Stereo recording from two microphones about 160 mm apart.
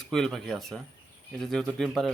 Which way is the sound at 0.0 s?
Centre (ahead or behind).